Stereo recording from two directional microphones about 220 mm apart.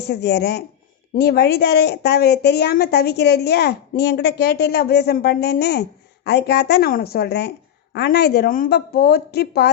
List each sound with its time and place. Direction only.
0.0 s a woman's voice: 50° left (ahead or behind)